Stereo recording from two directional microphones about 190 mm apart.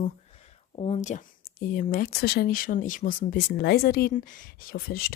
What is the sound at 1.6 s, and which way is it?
Speech, 50° left (ahead or behind).